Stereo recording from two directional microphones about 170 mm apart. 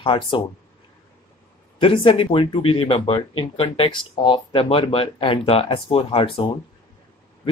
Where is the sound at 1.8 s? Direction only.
30° left (ahead or behind).